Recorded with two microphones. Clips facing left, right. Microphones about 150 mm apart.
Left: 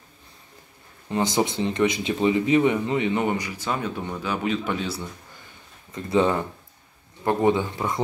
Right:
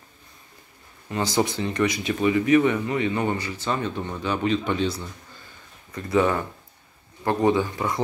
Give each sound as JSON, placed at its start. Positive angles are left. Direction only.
{"t": 1.1, "sound": "speech", "side_deg": 20}
{"t": 5.9, "sound": "speech", "side_deg": 25}